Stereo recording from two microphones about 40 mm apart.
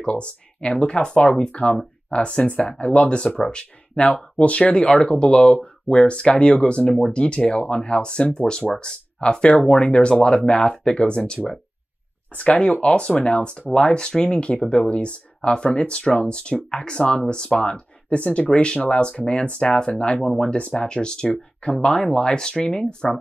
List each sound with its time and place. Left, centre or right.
0.1 s speech: left
12.8 s speech: left
20.1 s speech: centre
20.4 s speech: left